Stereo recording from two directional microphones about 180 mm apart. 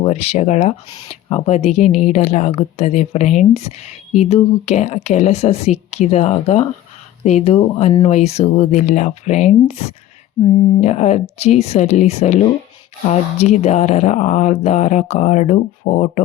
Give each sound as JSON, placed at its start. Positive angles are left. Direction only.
{"t": 0.0, "sound": "speech", "side_deg": 35}